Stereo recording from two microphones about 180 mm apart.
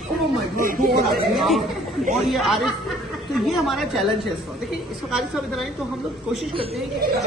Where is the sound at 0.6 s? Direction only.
55° right (ahead or behind).